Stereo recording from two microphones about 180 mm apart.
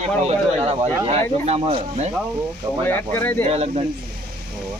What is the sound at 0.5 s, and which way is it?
Speech, 35° right (ahead or behind).